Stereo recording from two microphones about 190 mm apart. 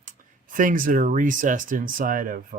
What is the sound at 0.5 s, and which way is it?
Speech, 45° right (ahead or behind).